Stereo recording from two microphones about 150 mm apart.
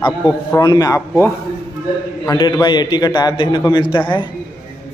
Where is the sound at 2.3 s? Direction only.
30° left (ahead or behind).